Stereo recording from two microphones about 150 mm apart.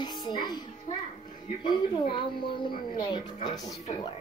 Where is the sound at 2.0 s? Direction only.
35° left (ahead or behind).